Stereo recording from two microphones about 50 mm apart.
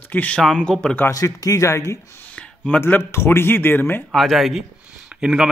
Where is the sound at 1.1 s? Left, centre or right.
Left.